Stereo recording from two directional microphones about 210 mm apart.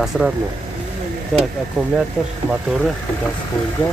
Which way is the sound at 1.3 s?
Centre (ahead or behind).